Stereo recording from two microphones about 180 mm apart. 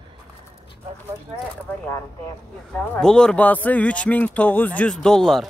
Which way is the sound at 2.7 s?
5° left (ahead or behind).